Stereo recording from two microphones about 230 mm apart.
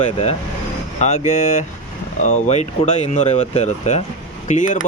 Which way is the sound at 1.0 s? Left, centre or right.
Left.